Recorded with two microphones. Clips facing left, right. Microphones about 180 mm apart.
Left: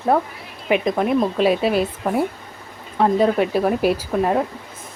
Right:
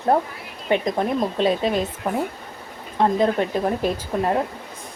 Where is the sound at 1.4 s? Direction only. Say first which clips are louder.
Left 3 dB; 10° left (ahead or behind).